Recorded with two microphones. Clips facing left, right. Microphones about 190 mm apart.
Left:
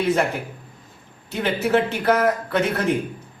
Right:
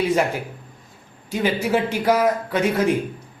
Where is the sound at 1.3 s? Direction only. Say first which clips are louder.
Even; 10° right (ahead or behind).